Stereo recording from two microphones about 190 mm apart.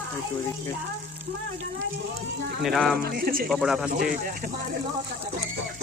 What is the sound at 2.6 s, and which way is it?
Speech, centre (ahead or behind).